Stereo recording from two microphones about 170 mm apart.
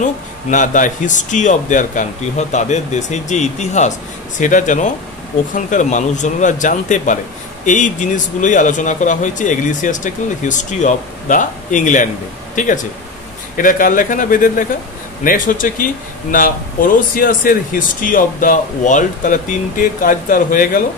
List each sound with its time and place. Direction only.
0.0 s speech: 50° left (ahead or behind)